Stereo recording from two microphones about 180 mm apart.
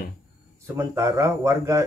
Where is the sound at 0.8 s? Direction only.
15° right (ahead or behind).